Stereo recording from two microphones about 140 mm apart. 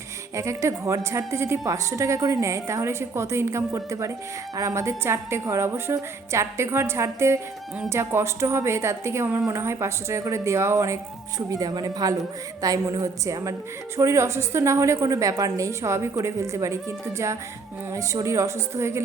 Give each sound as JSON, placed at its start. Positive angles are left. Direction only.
{"t": 0.3, "sound": "a woman's voice", "side_deg": -20}
{"t": 17.9, "sound": "a woman's voice", "side_deg": -20}